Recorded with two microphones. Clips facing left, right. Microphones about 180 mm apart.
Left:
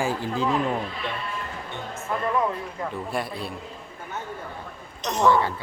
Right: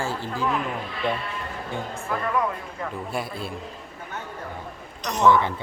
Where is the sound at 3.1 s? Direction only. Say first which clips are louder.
Left 1 dB; centre (ahead or behind).